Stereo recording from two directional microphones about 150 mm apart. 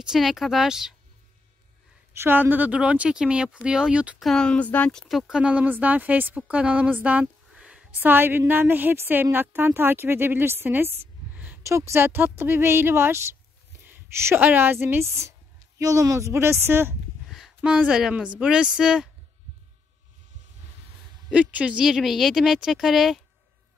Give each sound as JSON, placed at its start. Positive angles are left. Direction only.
{"t": 0.0, "sound": "speech", "side_deg": 0}
{"t": 2.1, "sound": "speech", "side_deg": -15}
{"t": 21.3, "sound": "speech", "side_deg": -10}